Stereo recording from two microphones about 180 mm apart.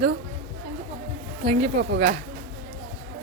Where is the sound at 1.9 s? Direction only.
60° right (ahead or behind).